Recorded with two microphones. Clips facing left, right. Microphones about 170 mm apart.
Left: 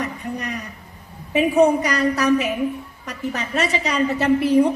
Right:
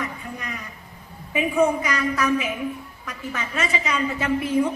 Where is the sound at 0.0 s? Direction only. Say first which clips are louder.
Left 5 dB; 40° left (ahead or behind).